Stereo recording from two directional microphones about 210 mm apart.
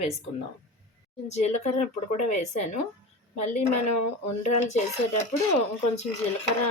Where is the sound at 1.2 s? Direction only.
30° left (ahead or behind).